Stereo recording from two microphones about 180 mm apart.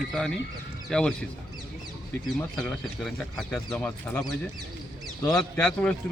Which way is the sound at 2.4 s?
5° left (ahead or behind).